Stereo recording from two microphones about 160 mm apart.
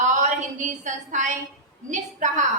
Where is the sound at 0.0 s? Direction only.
50° right (ahead or behind).